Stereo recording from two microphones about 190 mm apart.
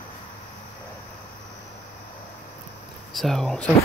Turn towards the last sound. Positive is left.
turn(degrees=5)  # may be behind; listen again after turning